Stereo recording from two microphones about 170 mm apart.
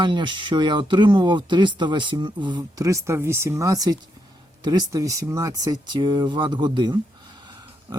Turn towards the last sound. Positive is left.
turn(degrees=-25)  # may be behind; listen again after turning